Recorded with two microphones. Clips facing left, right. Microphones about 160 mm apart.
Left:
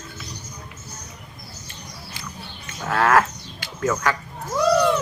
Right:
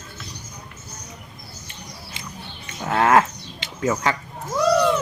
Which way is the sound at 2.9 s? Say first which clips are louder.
Right 1 dB; 20° right (ahead or behind).